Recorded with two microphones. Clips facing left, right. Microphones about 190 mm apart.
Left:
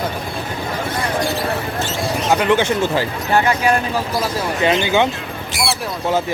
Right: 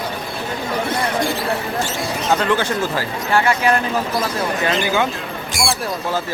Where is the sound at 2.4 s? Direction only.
20° left (ahead or behind).